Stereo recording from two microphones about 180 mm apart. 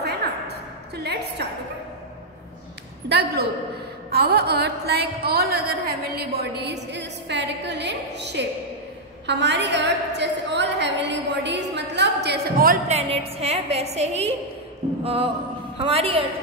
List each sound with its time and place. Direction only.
0.0 s music: 65° right (ahead or behind)
3.1 s a sound: 65° right (ahead or behind)
9.2 s a woman's voice: 70° right (ahead or behind); by 12.7 s 55° right (ahead or behind)
12.8 s a woman's voice: 35° right (ahead or behind)